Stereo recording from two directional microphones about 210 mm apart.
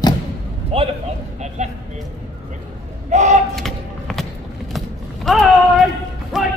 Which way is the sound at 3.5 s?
Centre (ahead or behind).